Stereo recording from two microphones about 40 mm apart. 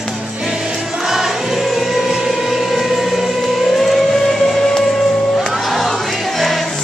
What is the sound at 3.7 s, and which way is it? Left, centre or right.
Music, centre.